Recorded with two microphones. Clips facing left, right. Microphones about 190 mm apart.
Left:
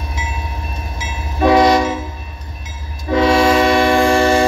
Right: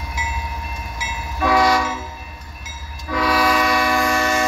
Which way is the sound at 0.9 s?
25° left (ahead or behind).